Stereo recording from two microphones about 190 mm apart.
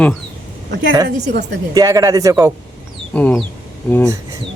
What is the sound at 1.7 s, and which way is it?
Speech, 20° right (ahead or behind).